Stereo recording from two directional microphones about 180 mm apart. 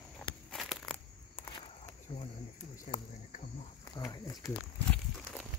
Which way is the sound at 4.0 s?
20° left (ahead or behind).